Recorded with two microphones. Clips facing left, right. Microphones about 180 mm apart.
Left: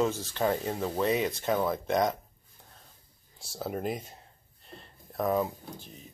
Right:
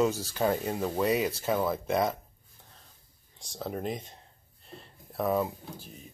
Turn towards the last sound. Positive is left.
turn(degrees=-5)  # may be behind; listen again after turning